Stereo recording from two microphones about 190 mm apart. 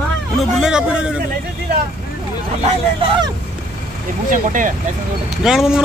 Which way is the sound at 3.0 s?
25° right (ahead or behind).